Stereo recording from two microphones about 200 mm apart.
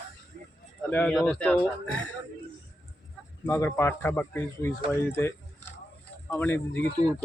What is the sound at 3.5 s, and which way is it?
Speech, 15° left (ahead or behind).